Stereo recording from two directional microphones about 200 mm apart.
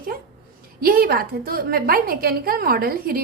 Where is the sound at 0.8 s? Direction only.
45° right (ahead or behind).